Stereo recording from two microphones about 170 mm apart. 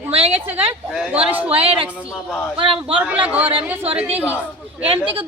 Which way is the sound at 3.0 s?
10° right (ahead or behind).